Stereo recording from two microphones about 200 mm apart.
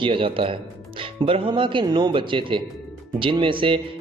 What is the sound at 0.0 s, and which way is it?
Speech, 25° right (ahead or behind).